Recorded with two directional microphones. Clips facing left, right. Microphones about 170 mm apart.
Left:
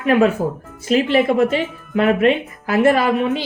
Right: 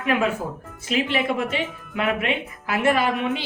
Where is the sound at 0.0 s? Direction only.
40° left (ahead or behind).